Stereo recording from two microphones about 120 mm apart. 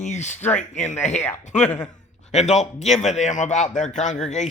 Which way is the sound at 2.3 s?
70° left (ahead or behind).